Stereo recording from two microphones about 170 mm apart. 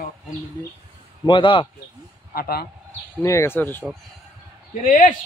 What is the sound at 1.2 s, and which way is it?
Speech, 30° left (ahead or behind).